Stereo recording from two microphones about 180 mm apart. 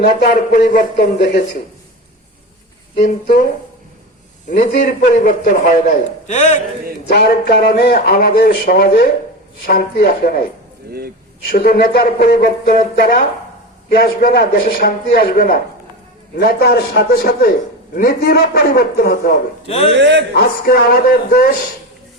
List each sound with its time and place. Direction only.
0.2 s speech: 65° left (ahead or behind)
2.9 s a man's voice: 45° left (ahead or behind)
4.4 s a man's voice: 45° left (ahead or behind)
7.1 s speech: 65° left (ahead or behind)
11.4 s speech: 60° left (ahead or behind)
13.9 s speech: 55° left (ahead or behind)
19.6 s a man's voice: 35° left (ahead or behind)
20.0 s a man's voice: 75° right (ahead or behind)
20.3 s speech: 60° left (ahead or behind)